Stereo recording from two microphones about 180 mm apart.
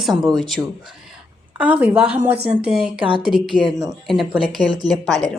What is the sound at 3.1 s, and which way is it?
Speech, 30° right (ahead or behind).